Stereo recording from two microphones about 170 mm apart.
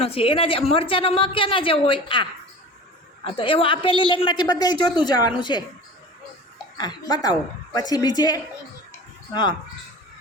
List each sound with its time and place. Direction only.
0.0 s a woman's voice: 35° left (ahead or behind)
3.2 s a woman's voice: 30° left (ahead or behind)
6.7 s a woman's voice: 25° left (ahead or behind)